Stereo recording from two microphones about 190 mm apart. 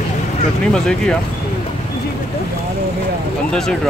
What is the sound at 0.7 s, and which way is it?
Speech, 5° left (ahead or behind).